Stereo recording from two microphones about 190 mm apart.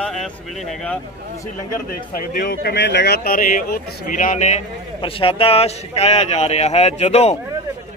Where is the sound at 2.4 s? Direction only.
50° left (ahead or behind).